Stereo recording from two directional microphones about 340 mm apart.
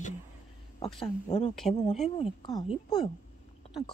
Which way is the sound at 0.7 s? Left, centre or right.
Centre.